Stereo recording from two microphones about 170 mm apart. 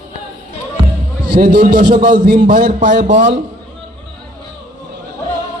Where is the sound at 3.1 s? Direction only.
90° right.